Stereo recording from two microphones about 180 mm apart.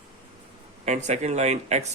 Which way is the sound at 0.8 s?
40° right (ahead or behind).